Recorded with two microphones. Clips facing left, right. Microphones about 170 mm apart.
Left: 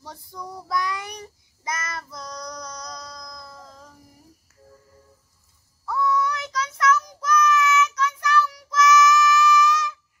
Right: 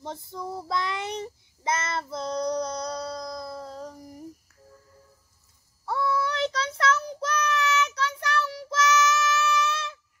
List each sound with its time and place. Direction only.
0.0 s child singing: 25° right (ahead or behind)
5.9 s child singing: 30° right (ahead or behind)